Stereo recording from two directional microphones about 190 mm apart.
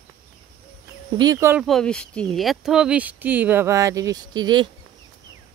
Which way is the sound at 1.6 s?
Centre (ahead or behind).